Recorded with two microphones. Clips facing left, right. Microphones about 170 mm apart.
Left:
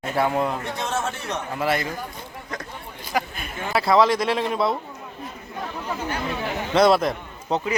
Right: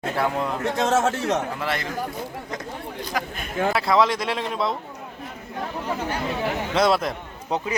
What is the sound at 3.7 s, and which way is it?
A man's voice, centre (ahead or behind).